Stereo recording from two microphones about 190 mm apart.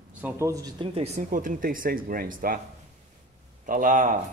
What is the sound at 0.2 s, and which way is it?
Speech, 10° right (ahead or behind).